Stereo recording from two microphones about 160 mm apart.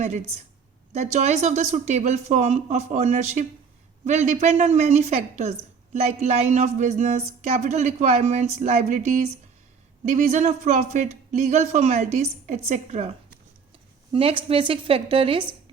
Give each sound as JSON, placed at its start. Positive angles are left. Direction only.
{"t": 0.0, "sound": "a woman's voice", "side_deg": -45}
{"t": 14.1, "sound": "a woman's voice", "side_deg": -35}